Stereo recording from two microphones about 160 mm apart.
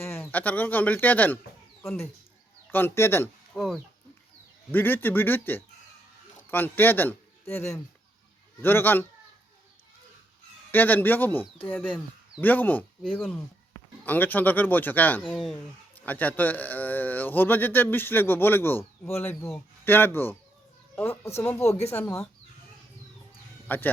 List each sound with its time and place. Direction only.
0.0 s speech: 15° left (ahead or behind)
2.6 s speech: 15° left (ahead or behind)
3.5 s speech: centre (ahead or behind)
4.7 s speech: 15° left (ahead or behind)
10.7 s speech: 10° left (ahead or behind)
14.0 s speech: 10° left (ahead or behind)
23.6 s speech: 10° left (ahead or behind)